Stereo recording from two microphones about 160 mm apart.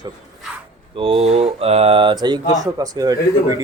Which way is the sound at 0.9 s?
35° right (ahead or behind).